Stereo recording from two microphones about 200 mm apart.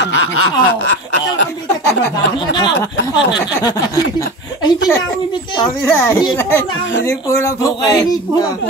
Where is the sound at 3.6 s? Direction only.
20° left (ahead or behind).